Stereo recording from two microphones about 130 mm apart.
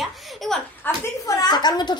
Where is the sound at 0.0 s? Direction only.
Centre (ahead or behind).